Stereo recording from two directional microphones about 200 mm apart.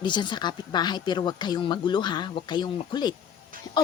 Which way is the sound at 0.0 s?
25° left (ahead or behind).